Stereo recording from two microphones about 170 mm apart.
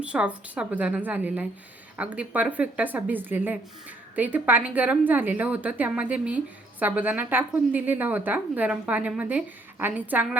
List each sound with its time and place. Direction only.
0.0 s a woman's voice: 5° right (ahead or behind)